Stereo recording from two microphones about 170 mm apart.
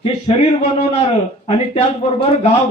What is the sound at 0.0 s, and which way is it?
Speech, 35° left (ahead or behind).